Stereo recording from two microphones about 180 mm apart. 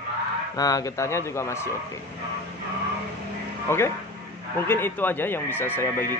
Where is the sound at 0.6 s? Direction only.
20° left (ahead or behind).